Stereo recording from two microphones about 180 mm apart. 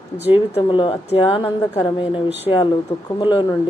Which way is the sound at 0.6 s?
25° left (ahead or behind).